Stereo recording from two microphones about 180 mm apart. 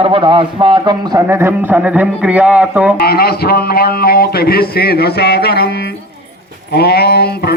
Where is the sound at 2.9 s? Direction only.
60° left (ahead or behind).